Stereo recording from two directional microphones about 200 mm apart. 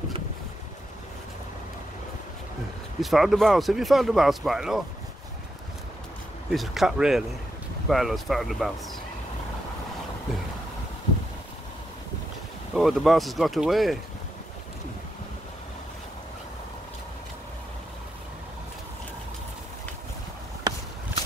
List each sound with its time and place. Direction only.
3.0 s speech: centre (ahead or behind)
6.5 s speech: centre (ahead or behind)
12.7 s speech: centre (ahead or behind)
20.7 s walk: 20° right (ahead or behind)